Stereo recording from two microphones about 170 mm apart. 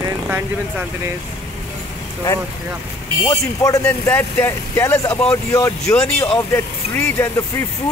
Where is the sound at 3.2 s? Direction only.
20° left (ahead or behind).